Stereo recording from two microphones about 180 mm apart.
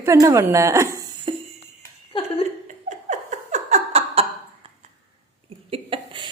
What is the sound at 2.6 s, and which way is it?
Laughter, 40° right (ahead or behind).